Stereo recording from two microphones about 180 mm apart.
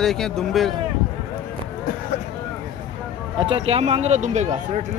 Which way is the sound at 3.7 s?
35° right (ahead or behind).